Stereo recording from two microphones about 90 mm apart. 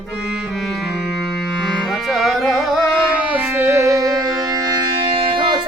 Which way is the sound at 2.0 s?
Centre (ahead or behind).